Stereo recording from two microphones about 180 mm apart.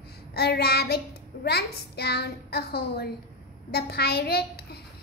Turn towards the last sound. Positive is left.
turn(degrees=60)  # may be behind; listen again after turning